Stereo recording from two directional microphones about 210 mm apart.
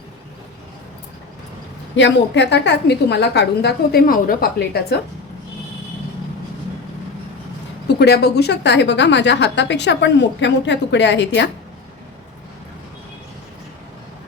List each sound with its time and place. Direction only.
2.0 s a woman's voice: 55° left (ahead or behind)
7.9 s a woman's voice: 50° left (ahead or behind)